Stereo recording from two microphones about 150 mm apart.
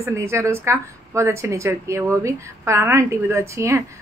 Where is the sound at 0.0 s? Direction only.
15° right (ahead or behind).